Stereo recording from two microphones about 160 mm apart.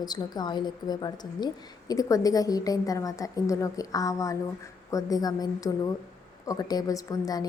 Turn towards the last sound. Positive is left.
turn(degrees=25)  # may be behind; listen again after turning